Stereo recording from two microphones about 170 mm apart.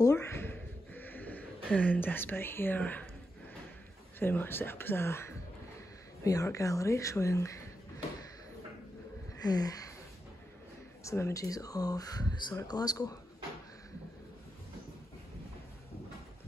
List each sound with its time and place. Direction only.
0.0 s a sound: 15° left (ahead or behind)
4.2 s speech: 10° left (ahead or behind)
9.4 s speech: 20° left (ahead or behind)
11.1 s speech: 15° left (ahead or behind)